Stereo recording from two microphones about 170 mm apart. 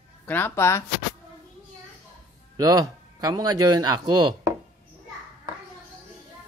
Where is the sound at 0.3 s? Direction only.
15° left (ahead or behind).